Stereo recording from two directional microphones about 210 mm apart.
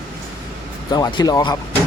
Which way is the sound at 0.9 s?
20° left (ahead or behind).